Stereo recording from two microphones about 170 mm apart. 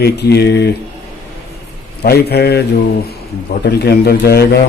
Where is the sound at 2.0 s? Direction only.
70° left (ahead or behind).